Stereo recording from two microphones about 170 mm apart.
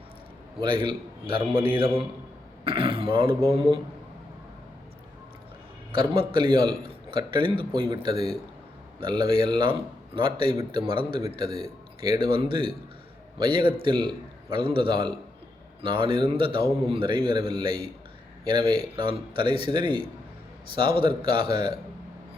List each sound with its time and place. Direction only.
0.6 s a man's voice: 30° right (ahead or behind)
5.9 s a man's voice: 30° right (ahead or behind)
9.0 s a man's voice: 30° right (ahead or behind)
11.4 s a man's voice: 35° left (ahead or behind)
12.0 s a man's voice: 25° right (ahead or behind)
18.9 s a man's voice: 30° right (ahead or behind)